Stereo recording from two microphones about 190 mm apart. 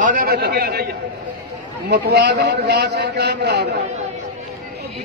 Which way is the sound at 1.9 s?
65° right (ahead or behind).